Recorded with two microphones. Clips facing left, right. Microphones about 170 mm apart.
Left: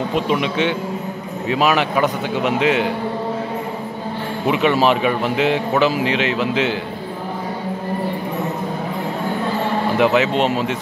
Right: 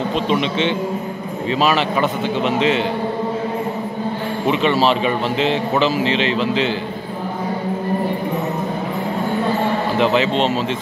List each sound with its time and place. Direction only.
0.1 s speech: 10° left (ahead or behind)
4.5 s speech: 10° left (ahead or behind)
9.9 s speech: 10° left (ahead or behind)